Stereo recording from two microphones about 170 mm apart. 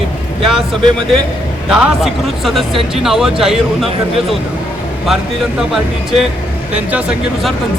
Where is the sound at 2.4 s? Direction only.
Centre (ahead or behind).